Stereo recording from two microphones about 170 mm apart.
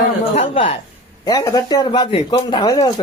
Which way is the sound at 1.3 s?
20° left (ahead or behind).